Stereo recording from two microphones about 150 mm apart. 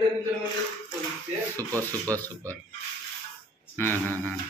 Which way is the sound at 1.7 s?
20° right (ahead or behind).